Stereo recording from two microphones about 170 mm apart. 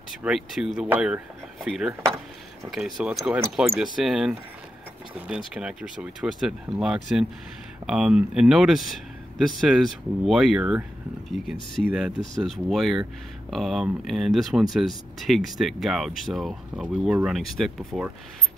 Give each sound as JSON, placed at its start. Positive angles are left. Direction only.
{"t": 0.2, "sound": "speech", "side_deg": -5}
{"t": 5.5, "sound": "speech", "side_deg": -5}